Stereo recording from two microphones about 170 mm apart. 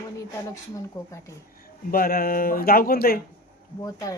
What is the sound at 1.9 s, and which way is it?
A man's voice, 60° left (ahead or behind).